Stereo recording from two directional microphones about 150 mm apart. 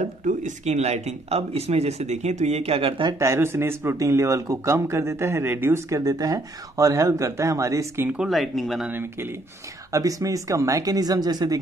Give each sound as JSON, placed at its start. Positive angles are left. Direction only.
{"t": 0.0, "sound": "speech", "side_deg": -55}
{"t": 3.2, "sound": "speech", "side_deg": -15}
{"t": 9.9, "sound": "speech", "side_deg": -20}